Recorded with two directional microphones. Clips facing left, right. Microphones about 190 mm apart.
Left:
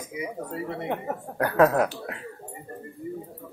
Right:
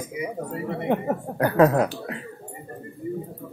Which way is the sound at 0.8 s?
5° right (ahead or behind).